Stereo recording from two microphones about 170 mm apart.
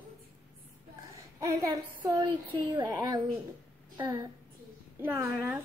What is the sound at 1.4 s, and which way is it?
A woman's voice, 20° right (ahead or behind).